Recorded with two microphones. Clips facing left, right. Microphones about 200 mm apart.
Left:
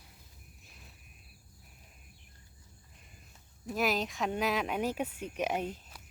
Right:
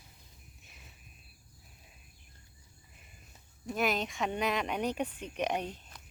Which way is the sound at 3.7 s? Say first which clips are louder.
Even; centre (ahead or behind).